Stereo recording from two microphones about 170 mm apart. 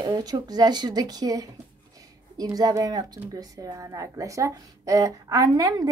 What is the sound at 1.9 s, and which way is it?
Speech, 20° right (ahead or behind).